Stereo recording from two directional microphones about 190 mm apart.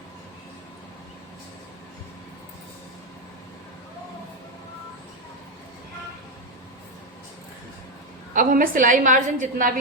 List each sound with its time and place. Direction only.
8.4 s a woman's voice: 45° right (ahead or behind)